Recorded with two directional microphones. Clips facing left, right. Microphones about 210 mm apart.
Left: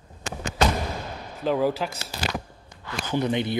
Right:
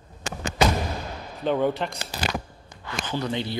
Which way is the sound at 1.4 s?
Centre (ahead or behind).